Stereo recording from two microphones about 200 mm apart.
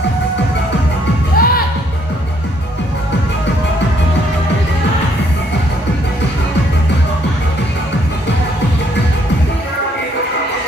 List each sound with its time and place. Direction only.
1.4 s music: 45° left (ahead or behind)